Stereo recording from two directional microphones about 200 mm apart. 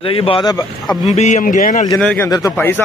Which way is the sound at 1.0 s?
35° left (ahead or behind).